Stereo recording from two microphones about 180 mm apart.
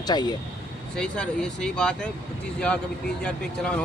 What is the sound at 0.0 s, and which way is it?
Speech, 25° left (ahead or behind).